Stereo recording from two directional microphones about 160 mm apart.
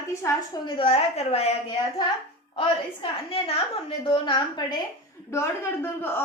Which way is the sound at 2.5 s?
35° left (ahead or behind).